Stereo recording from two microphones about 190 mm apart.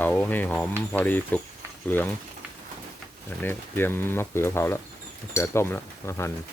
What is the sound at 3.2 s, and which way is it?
Speech, 10° left (ahead or behind).